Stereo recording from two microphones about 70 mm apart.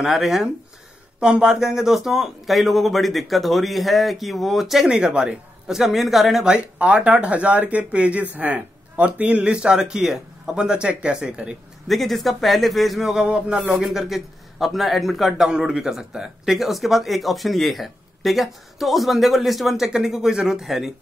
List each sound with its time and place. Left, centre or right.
0.0 s a man's voice: centre
6.5 s speech: centre
11.9 s a man's voice: centre